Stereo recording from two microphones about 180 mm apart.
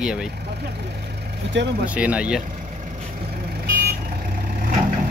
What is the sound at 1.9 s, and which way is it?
Speech, 5° right (ahead or behind).